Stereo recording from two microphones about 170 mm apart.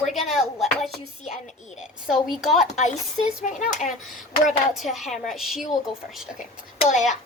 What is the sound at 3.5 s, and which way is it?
Speech, 45° left (ahead or behind).